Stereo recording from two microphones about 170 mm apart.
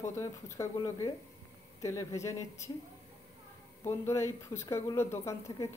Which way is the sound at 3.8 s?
15° left (ahead or behind).